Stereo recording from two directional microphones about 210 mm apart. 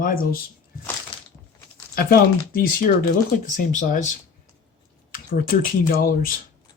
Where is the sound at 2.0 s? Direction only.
45° left (ahead or behind).